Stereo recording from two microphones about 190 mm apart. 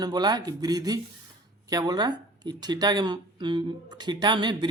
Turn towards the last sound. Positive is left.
turn(degrees=-25)  # may be behind; listen again after turning